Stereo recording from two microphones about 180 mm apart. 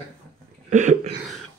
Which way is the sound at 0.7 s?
45° right (ahead or behind).